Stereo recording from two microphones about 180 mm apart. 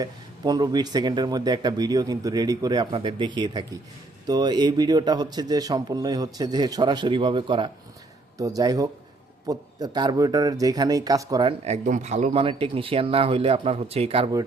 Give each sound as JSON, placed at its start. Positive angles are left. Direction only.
{"t": 0.0, "sound": "speech", "side_deg": -20}
{"t": 11.6, "sound": "speech", "side_deg": -40}